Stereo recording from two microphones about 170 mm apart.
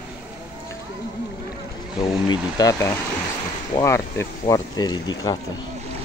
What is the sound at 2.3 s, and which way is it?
Speech, 20° left (ahead or behind).